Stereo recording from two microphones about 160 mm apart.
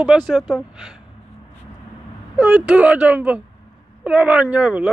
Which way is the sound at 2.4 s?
5° right (ahead or behind).